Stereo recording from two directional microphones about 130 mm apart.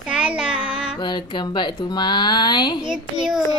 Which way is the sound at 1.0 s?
35° left (ahead or behind).